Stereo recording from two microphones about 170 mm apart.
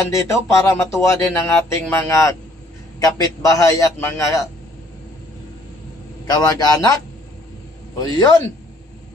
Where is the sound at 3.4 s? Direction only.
20° left (ahead or behind).